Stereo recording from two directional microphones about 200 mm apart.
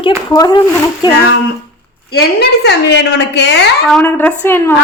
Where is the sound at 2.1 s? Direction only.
55° left (ahead or behind).